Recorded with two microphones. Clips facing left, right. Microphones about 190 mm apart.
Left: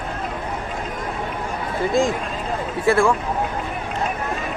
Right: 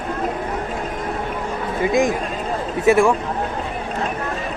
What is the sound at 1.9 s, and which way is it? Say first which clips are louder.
A man's voice: right 1 dB; 20° right (ahead or behind).